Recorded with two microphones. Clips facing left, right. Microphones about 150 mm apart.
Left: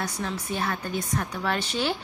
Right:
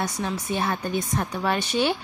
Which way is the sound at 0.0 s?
20° right (ahead or behind).